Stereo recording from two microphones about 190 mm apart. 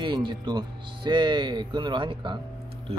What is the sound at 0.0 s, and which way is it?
Speech, 25° right (ahead or behind).